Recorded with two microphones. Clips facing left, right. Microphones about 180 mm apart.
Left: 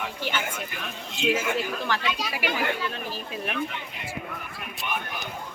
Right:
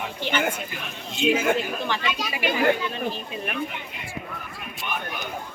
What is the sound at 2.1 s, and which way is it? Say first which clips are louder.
Speech: right 3 dB; 5° left (ahead or behind).